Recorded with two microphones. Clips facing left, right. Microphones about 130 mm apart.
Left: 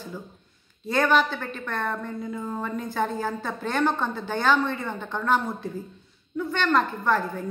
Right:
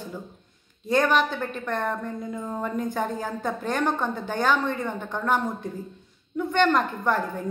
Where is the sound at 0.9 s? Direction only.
15° right (ahead or behind).